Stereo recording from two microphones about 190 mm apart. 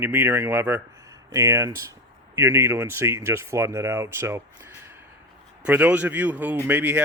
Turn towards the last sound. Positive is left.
turn(degrees=-10)  # may be behind; listen again after turning